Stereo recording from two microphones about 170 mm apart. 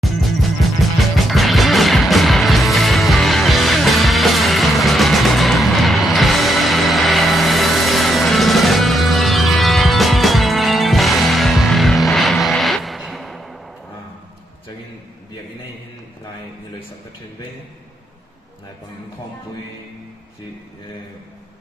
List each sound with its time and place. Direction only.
0.0 s music: centre (ahead or behind)